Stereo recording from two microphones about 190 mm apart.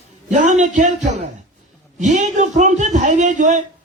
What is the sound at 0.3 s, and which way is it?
A man's voice, 40° right (ahead or behind).